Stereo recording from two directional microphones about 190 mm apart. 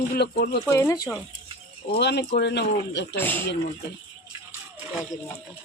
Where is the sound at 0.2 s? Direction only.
60° left (ahead or behind).